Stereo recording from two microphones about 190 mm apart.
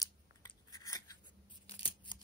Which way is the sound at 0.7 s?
20° left (ahead or behind).